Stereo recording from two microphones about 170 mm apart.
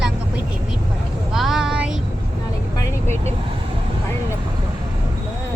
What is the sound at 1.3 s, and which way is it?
Speech, centre (ahead or behind).